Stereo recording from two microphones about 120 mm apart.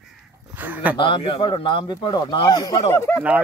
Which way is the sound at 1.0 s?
45° left (ahead or behind).